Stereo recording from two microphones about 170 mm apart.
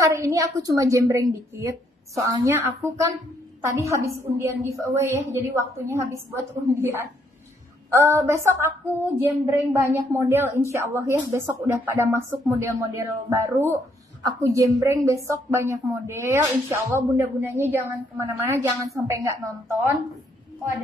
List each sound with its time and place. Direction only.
0.0 s a woman's voice: 20° right (ahead or behind)